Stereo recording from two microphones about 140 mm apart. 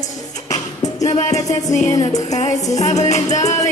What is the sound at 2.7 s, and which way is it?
Music, 55° left (ahead or behind).